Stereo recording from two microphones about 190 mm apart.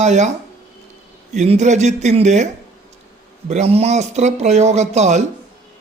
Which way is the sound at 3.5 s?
35° right (ahead or behind).